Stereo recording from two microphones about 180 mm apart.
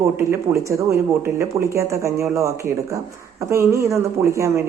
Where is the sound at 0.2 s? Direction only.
15° right (ahead or behind).